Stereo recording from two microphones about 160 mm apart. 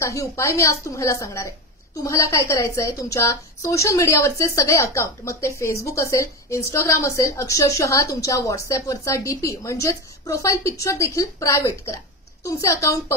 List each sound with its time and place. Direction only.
0.0 s a woman's voice: 20° left (ahead or behind)